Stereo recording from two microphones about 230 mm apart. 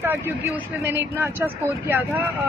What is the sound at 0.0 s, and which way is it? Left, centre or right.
Speech, centre.